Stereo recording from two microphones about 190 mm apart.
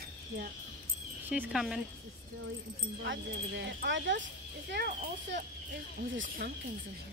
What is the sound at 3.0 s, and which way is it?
Speech, 65° right (ahead or behind).